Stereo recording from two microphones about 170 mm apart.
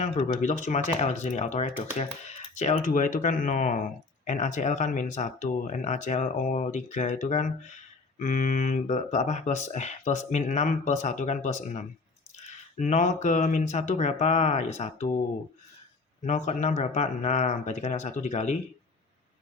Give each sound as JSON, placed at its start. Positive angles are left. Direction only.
{"t": 0.0, "sound": "speech", "side_deg": 45}
{"t": 16.2, "sound": "speech", "side_deg": 45}